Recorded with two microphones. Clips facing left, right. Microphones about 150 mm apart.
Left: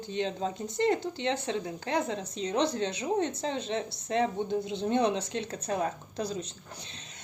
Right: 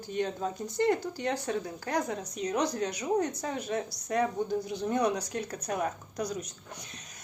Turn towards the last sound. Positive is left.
turn(degrees=30)  # may be behind; listen again after turning